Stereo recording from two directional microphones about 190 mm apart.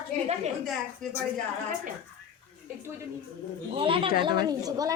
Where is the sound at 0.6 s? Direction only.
5° left (ahead or behind).